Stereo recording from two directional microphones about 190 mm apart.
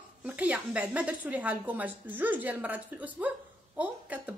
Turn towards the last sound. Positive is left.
turn(degrees=-10)  # may be behind; listen again after turning